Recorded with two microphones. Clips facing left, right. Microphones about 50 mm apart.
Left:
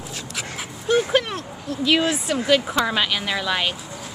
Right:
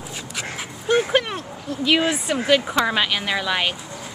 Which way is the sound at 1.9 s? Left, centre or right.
Centre.